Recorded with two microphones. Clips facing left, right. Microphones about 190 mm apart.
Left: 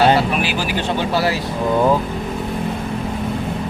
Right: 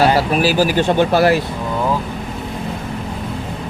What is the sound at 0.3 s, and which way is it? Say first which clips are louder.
Speech: right 6 dB; 40° right (ahead or behind).